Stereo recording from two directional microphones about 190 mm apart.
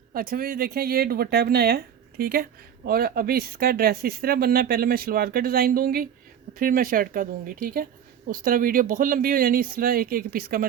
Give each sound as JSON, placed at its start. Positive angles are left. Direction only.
{"t": 0.1, "sound": "speech", "side_deg": -50}